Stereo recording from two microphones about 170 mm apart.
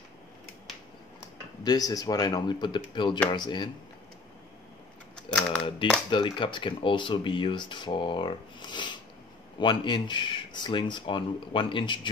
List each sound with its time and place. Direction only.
1.6 s speech: 20° left (ahead or behind)
5.1 s typing: 5° left (ahead or behind)
6.0 s speech: 30° left (ahead or behind)